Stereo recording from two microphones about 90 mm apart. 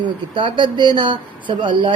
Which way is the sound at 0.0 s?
60° right (ahead or behind).